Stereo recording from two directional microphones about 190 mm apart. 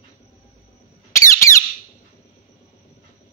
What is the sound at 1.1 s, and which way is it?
Squeak, 15° left (ahead or behind).